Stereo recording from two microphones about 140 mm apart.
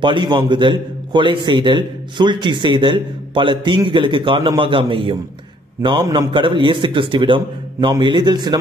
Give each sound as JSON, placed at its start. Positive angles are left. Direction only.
{"t": 0.0, "sound": "a man's voice", "side_deg": -35}